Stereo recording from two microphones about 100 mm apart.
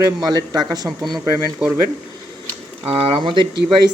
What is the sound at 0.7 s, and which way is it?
Speech, 30° right (ahead or behind).